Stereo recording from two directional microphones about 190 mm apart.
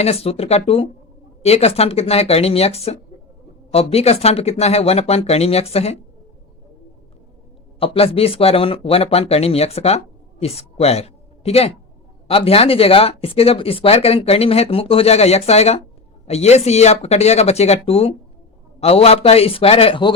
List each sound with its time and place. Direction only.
0.0 s speech: 30° left (ahead or behind)
7.8 s speech: 30° left (ahead or behind)